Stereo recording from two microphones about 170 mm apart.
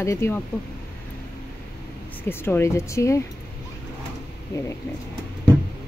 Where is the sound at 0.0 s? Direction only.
15° left (ahead or behind).